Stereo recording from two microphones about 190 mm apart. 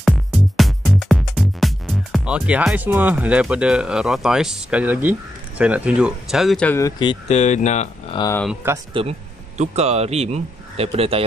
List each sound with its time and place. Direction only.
0.0 s music: centre (ahead or behind)
5.6 s speech: 5° right (ahead or behind)
6.8 s speech: 25° left (ahead or behind)
7.2 s speech: 35° left (ahead or behind)
8.1 s speech: 20° left (ahead or behind)
8.6 s speech: 10° right (ahead or behind)
9.6 s speech: 35° right (ahead or behind)